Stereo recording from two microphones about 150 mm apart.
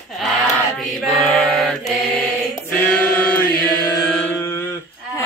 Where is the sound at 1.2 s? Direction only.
5° left (ahead or behind).